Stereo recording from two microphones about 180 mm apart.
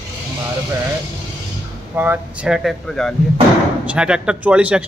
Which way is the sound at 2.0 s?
10° right (ahead or behind).